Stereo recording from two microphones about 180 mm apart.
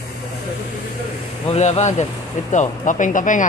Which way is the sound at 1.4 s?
35° left (ahead or behind).